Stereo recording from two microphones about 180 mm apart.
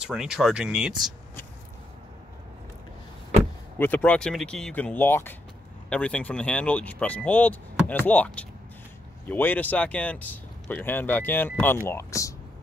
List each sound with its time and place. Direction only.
0.0 s speech: 5° right (ahead or behind)
3.7 s speech: 10° left (ahead or behind)